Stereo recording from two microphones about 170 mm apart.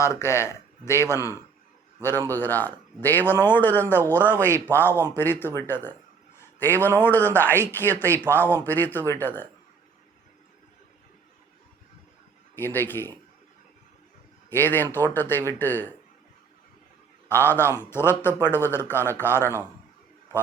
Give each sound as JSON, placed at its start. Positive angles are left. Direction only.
{"t": 0.0, "sound": "a man's voice", "side_deg": 15}
{"t": 12.5, "sound": "speech", "side_deg": 10}
{"t": 14.5, "sound": "speech", "side_deg": 10}
{"t": 17.2, "sound": "speech", "side_deg": 15}